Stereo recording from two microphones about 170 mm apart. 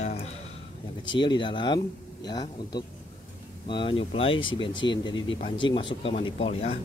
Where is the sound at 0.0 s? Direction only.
40° left (ahead or behind).